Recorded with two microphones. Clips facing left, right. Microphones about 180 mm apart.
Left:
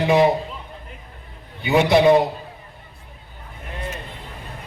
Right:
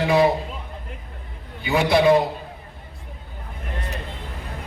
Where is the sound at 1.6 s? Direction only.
20° left (ahead or behind).